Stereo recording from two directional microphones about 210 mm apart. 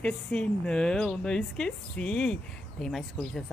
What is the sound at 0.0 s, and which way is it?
A woman's voice, 5° left (ahead or behind).